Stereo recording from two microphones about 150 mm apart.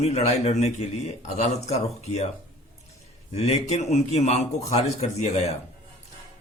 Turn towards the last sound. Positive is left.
turn(degrees=45)  # may be behind; listen again after turning